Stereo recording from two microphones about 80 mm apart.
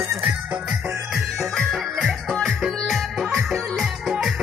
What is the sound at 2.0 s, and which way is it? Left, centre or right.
Music, centre.